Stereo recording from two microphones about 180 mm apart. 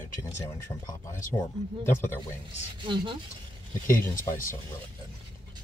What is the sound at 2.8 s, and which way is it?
Speech, 30° right (ahead or behind).